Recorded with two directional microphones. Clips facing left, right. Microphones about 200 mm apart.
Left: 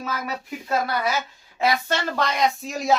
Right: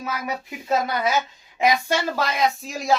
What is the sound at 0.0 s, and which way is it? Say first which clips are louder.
Speech: right 1 dB; 20° right (ahead or behind).